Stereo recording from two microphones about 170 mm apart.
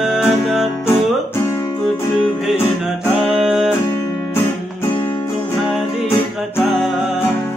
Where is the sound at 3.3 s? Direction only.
Centre (ahead or behind).